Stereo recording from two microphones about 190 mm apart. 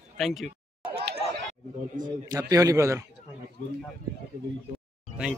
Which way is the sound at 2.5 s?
15° right (ahead or behind).